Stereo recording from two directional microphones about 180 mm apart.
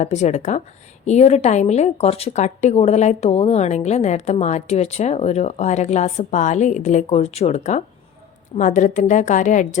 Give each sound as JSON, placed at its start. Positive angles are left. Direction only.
{"t": 0.0, "sound": "a woman's voice", "side_deg": 40}